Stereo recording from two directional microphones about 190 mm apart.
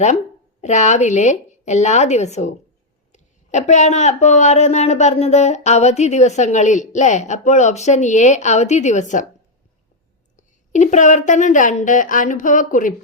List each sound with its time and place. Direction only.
0.6 s speech: 40° left (ahead or behind)
10.3 s speech: 40° left (ahead or behind)